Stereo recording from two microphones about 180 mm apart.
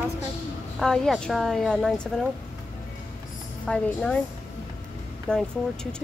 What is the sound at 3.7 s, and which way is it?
Speech, 5° left (ahead or behind).